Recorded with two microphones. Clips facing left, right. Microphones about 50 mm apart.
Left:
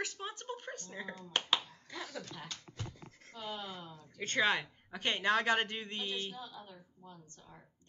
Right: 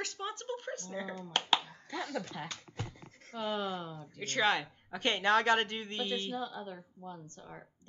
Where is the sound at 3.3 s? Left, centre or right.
Right.